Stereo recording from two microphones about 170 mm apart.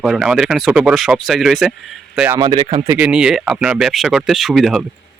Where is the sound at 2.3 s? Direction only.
25° right (ahead or behind).